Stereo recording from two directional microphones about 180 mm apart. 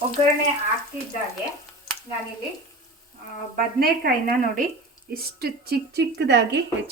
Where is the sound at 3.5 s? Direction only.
55° right (ahead or behind).